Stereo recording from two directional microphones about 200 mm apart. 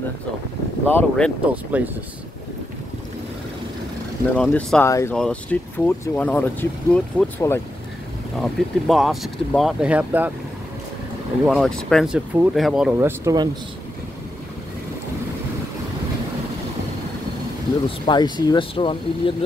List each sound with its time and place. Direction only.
0.8 s speech: 5° left (ahead or behind)
1.5 s speech: 5° right (ahead or behind)
4.4 s speech: 5° left (ahead or behind)
8.4 s speech: centre (ahead or behind)
11.4 s speech: centre (ahead or behind)
13.2 s speech: 20° right (ahead or behind)
17.8 s speech: 25° left (ahead or behind)